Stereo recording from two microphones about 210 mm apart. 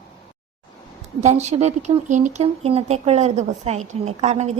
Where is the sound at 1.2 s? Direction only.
30° right (ahead or behind).